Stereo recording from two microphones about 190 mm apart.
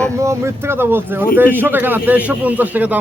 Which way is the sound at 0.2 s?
15° right (ahead or behind).